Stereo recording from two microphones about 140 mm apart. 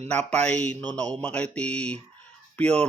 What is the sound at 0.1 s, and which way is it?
Speech, 10° left (ahead or behind).